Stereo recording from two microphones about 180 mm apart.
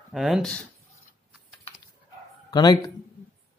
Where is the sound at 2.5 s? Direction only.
20° left (ahead or behind).